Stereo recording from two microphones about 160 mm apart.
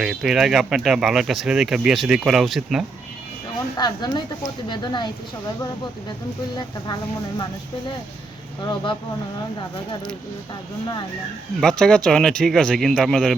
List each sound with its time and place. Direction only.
0.0 s speech: 5° right (ahead or behind)
3.8 s speech: 25° left (ahead or behind)
8.6 s speech: 30° left (ahead or behind)
11.6 s speech: 5° left (ahead or behind)